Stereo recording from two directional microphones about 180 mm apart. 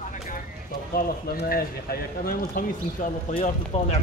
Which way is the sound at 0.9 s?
55° left (ahead or behind).